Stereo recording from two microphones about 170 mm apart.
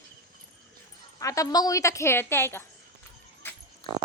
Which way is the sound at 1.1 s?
20° left (ahead or behind).